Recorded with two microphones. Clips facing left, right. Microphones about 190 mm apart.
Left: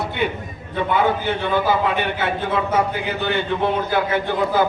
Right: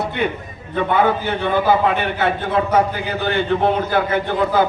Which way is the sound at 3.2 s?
55° right (ahead or behind).